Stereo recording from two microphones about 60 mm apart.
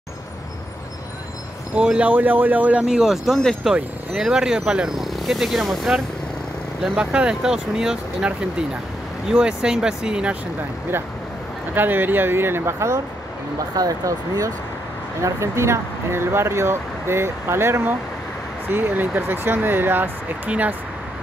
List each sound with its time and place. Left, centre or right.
1.8 s speech: right
2.8 s speech: centre
4.9 s speech: centre
6.8 s speech: centre
9.3 s speech: centre
11.7 s speech: right
12.7 s speech: right
13.7 s speech: right
15.2 s speech: right
18.7 s speech: right
20.4 s speech: right